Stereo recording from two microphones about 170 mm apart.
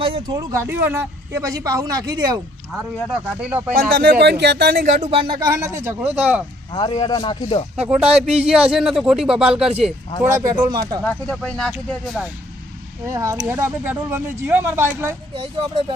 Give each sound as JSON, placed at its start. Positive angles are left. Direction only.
{"t": 0.0, "sound": "speech", "side_deg": -30}
{"t": 3.8, "sound": "speech", "side_deg": -60}
{"t": 4.9, "sound": "speech", "side_deg": -45}
{"t": 5.2, "sound": "speech", "side_deg": -25}
{"t": 6.7, "sound": "speech", "side_deg": 30}
{"t": 7.8, "sound": "speech", "side_deg": -5}
{"t": 10.7, "sound": "speech", "side_deg": -25}
{"t": 11.0, "sound": "speech", "side_deg": 5}
{"t": 13.1, "sound": "speech", "side_deg": -15}
{"t": 15.4, "sound": "speech", "side_deg": -35}